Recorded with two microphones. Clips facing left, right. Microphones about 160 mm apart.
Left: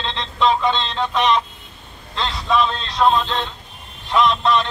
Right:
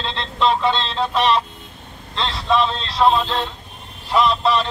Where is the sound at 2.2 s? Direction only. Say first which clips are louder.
Even; centre (ahead or behind).